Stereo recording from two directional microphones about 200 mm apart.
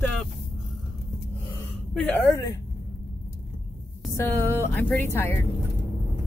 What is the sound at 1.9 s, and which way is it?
Speech, 10° left (ahead or behind).